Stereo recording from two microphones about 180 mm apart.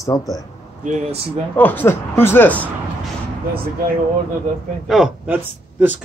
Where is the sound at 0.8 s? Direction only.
35° right (ahead or behind).